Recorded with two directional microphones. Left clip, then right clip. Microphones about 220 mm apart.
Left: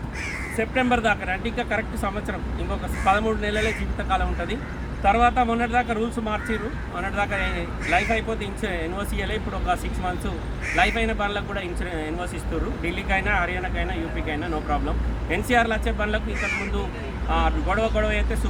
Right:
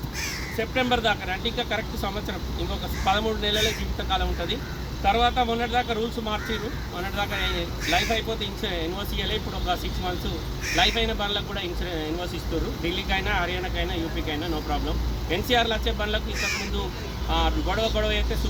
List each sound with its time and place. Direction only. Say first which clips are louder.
0.6 s speech: left 2 dB; 15° left (ahead or behind)
10.8 s speech: left 1 dB; 15° left (ahead or behind)
17.2 s speech: left 2 dB; 15° left (ahead or behind)